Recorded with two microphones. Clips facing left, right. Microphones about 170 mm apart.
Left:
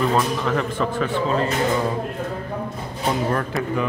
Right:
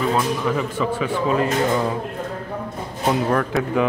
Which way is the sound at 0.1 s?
5° right (ahead or behind).